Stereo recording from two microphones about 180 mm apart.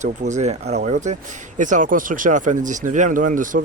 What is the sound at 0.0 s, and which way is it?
Speech, 40° right (ahead or behind).